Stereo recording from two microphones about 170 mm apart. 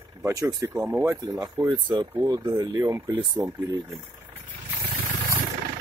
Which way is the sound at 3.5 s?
10° right (ahead or behind).